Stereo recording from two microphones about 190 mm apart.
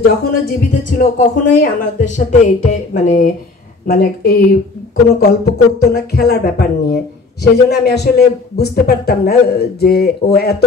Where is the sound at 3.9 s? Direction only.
50° left (ahead or behind).